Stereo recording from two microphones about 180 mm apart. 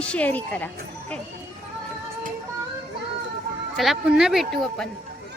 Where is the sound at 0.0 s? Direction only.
5° left (ahead or behind).